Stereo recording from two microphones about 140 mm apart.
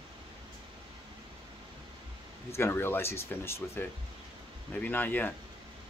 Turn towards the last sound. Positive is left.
turn(degrees=15)  # may be behind; listen again after turning